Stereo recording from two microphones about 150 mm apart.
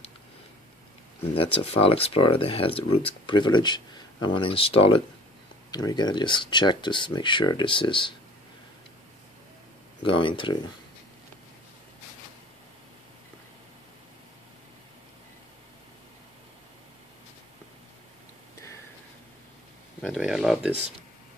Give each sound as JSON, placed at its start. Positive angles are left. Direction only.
{"t": 1.2, "sound": "speech", "side_deg": 40}
{"t": 5.7, "sound": "speech", "side_deg": 25}
{"t": 10.0, "sound": "speech", "side_deg": 35}
{"t": 20.0, "sound": "speech", "side_deg": 0}